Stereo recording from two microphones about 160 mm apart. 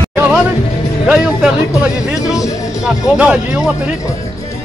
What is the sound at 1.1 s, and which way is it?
Speech, centre (ahead or behind).